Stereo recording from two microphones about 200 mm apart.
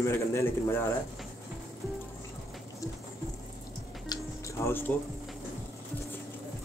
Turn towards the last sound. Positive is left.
turn(degrees=10)  # may be behind; listen again after turning